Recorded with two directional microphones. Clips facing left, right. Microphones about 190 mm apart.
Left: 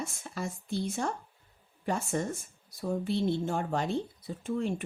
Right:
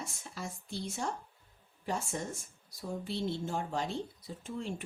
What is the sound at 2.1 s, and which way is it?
Speech, 60° left (ahead or behind).